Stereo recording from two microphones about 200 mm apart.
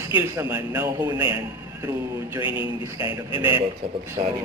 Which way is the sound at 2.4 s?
25° left (ahead or behind).